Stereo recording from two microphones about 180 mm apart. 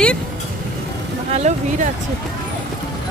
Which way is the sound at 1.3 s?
40° right (ahead or behind).